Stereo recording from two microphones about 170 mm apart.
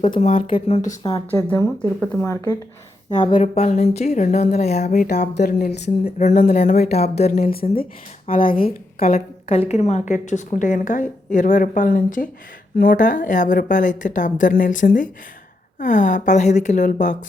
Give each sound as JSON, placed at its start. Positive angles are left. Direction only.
{"t": 0.2, "sound": "speech", "side_deg": 40}
{"t": 1.3, "sound": "speech", "side_deg": 15}
{"t": 3.1, "sound": "a woman's voice", "side_deg": 30}
{"t": 5.3, "sound": "a woman's voice", "side_deg": 70}
{"t": 7.3, "sound": "speech", "side_deg": 55}
{"t": 9.5, "sound": "a woman's voice", "side_deg": 40}